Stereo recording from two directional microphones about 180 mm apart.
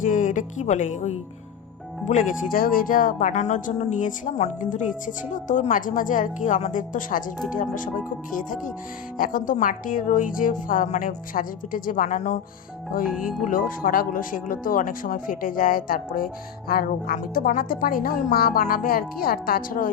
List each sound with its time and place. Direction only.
0.0 s speech: 45° left (ahead or behind)
13.1 s speech: 5° right (ahead or behind)
13.5 s speech: 50° left (ahead or behind)